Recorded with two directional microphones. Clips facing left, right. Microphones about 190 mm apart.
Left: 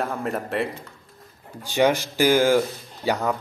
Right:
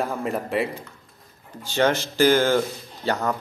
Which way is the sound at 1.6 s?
15° left (ahead or behind).